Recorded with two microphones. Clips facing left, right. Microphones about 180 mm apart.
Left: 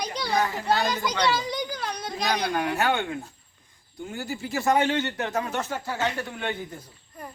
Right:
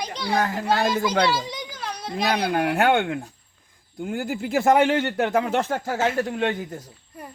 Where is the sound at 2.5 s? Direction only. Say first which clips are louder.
Right 8 dB; 65° right (ahead or behind).